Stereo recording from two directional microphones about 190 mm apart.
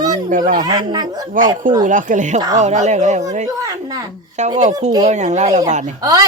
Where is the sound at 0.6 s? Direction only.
20° right (ahead or behind).